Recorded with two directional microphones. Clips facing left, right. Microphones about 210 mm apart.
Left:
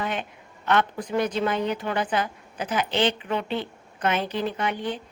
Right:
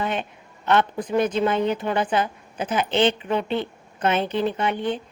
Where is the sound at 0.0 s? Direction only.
25° right (ahead or behind).